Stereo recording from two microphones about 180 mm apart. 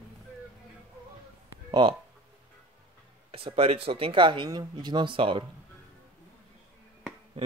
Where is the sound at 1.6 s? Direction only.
25° right (ahead or behind).